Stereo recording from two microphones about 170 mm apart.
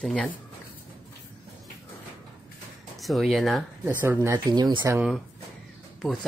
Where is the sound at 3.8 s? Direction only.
15° right (ahead or behind).